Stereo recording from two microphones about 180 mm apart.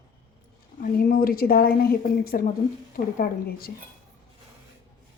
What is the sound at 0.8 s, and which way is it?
A woman's voice, 50° left (ahead or behind).